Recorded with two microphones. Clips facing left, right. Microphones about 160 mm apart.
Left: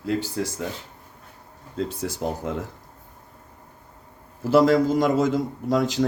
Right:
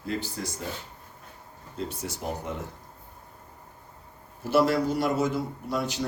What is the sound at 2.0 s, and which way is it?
Speech, 90° left.